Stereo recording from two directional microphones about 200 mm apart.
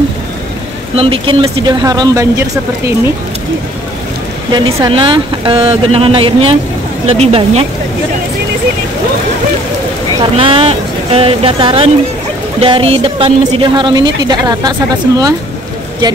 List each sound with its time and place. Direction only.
0.9 s speech: 25° right (ahead or behind)
4.5 s speech: 20° right (ahead or behind)
10.3 s speech: 25° right (ahead or behind)